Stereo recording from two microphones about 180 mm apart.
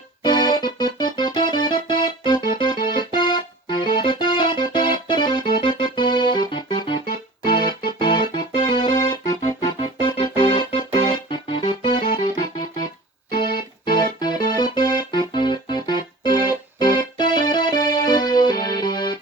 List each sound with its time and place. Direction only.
0.2 s keyboard: 25° left (ahead or behind)
7.4 s music: 25° left (ahead or behind)
13.8 s keyboard: 25° left (ahead or behind)